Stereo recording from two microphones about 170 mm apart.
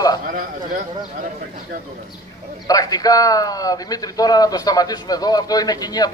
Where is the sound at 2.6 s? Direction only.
20° left (ahead or behind).